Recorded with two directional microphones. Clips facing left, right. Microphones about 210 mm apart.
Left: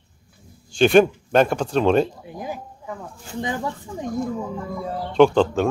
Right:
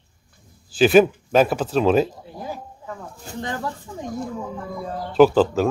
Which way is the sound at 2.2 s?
15° left (ahead or behind).